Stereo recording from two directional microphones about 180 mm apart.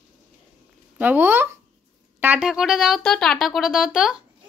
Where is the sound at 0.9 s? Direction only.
10° right (ahead or behind).